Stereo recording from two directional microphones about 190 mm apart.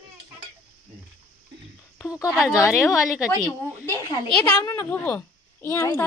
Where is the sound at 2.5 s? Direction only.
15° left (ahead or behind).